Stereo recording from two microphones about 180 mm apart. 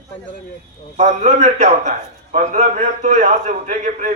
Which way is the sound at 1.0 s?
45° right (ahead or behind).